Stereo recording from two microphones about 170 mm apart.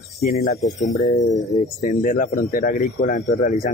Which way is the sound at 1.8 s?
50° left (ahead or behind).